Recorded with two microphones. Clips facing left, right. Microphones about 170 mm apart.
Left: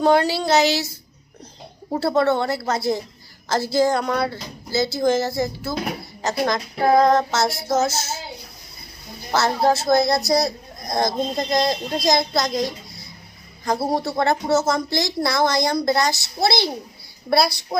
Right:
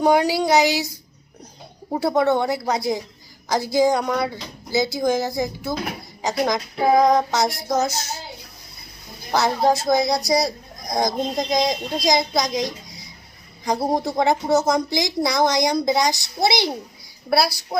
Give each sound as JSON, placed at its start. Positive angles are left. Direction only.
{"t": 0.0, "sound": "speech", "side_deg": -15}
{"t": 1.9, "sound": "speech", "side_deg": -15}
{"t": 9.3, "sound": "a woman's voice", "side_deg": -15}